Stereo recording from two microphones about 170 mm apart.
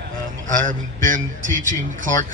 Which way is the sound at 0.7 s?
50° right (ahead or behind).